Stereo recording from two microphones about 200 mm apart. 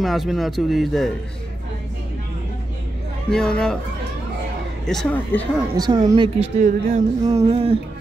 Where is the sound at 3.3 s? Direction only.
5° left (ahead or behind).